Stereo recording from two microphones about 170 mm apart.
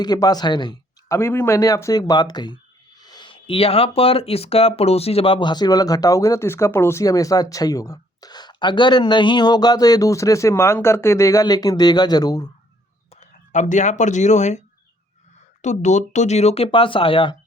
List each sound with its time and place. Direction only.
0.0 s speech: 25° left (ahead or behind)
13.1 s speech: 45° left (ahead or behind)
15.6 s speech: 45° left (ahead or behind)